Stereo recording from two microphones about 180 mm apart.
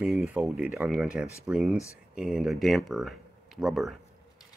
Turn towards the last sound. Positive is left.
turn(degrees=0)  # may be behind; listen again after turning